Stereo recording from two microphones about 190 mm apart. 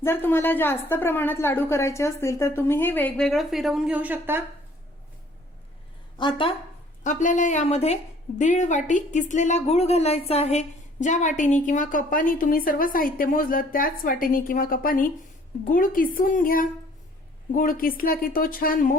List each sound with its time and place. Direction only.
0.0 s a woman's voice: 10° left (ahead or behind); by 4.4 s 10° right (ahead or behind)
6.1 s speech: 25° left (ahead or behind)
7.0 s a woman's voice: 40° left (ahead or behind)